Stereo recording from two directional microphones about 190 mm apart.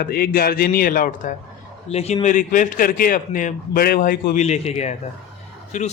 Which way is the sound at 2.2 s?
45° left (ahead or behind).